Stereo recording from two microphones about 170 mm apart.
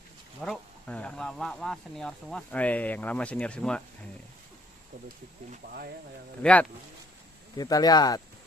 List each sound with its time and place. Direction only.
0.4 s speech: 5° left (ahead or behind)
5.0 s speech: 55° right (ahead or behind)
6.4 s speech: 5° left (ahead or behind)
7.5 s speech: 20° left (ahead or behind)